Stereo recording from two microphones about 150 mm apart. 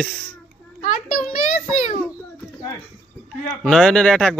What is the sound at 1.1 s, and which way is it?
Speech, 5° left (ahead or behind).